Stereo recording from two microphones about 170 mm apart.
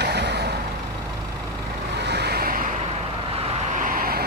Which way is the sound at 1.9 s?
75° right (ahead or behind).